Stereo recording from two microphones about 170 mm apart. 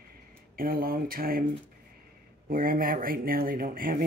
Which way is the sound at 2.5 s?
55° right (ahead or behind).